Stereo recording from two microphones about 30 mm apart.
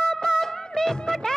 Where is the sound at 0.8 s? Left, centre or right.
Centre.